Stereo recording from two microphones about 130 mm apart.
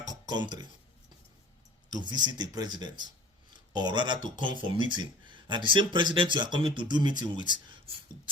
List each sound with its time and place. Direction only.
0.3 s speech: 35° right (ahead or behind)
1.9 s speech: 35° right (ahead or behind)